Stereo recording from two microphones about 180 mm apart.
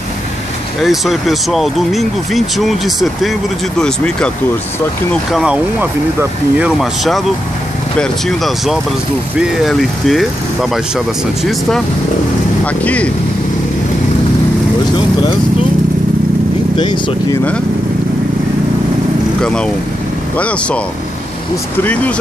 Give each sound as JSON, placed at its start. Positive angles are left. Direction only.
{"t": 0.8, "sound": "speech", "side_deg": 0}
{"t": 12.8, "sound": "speech", "side_deg": 5}
{"t": 16.7, "sound": "speech", "side_deg": 25}
{"t": 19.4, "sound": "speech", "side_deg": 5}
{"t": 21.8, "sound": "speech", "side_deg": 10}